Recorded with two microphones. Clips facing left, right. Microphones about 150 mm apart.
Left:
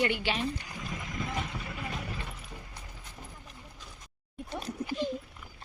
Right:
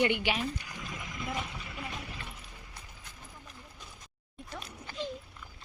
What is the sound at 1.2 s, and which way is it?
Clip-clop, 40° left (ahead or behind).